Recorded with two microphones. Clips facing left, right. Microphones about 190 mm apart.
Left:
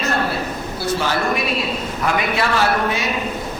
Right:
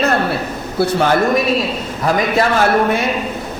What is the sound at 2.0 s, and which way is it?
A man's voice, 45° right (ahead or behind).